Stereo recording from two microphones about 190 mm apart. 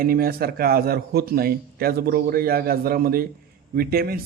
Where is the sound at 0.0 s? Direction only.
50° right (ahead or behind).